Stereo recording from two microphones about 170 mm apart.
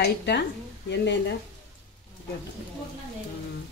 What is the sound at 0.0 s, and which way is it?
A woman's voice, 85° left.